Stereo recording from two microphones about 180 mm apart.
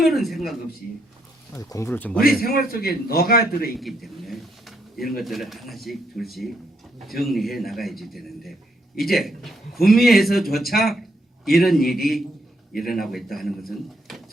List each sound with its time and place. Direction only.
0.0 s speech: centre (ahead or behind)
1.5 s speech: 15° left (ahead or behind)
2.2 s a man's voice: 55° left (ahead or behind)
3.8 s speech: centre (ahead or behind)